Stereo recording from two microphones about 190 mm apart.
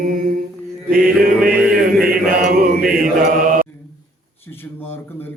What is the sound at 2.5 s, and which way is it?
Mantra, 50° right (ahead or behind).